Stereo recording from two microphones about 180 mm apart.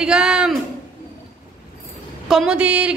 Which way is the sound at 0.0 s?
5° right (ahead or behind).